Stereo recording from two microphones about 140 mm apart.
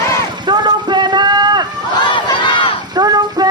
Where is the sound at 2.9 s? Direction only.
30° right (ahead or behind).